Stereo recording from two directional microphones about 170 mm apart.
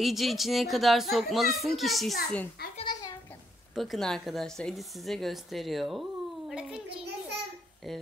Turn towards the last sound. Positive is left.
turn(degrees=0)  # may be behind; listen again after turning